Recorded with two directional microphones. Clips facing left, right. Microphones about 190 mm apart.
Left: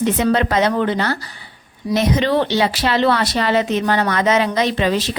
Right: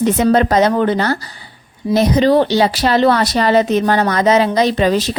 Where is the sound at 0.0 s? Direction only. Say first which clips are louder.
Right 4 dB; 40° right (ahead or behind).